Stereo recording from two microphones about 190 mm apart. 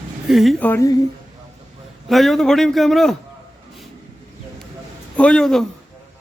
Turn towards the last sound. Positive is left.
turn(degrees=0)  # may be behind; listen again after turning